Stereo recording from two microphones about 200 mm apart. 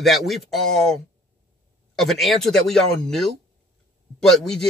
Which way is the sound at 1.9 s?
Centre (ahead or behind).